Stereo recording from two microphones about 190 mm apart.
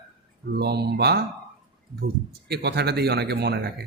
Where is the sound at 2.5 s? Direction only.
60° right (ahead or behind).